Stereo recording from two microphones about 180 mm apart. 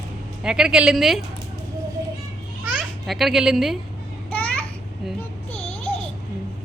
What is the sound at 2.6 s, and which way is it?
Babbling, centre (ahead or behind).